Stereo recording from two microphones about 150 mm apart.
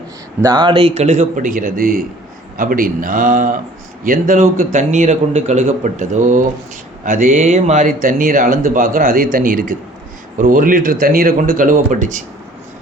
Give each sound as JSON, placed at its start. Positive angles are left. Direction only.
{"t": 0.4, "sound": "speech", "side_deg": -30}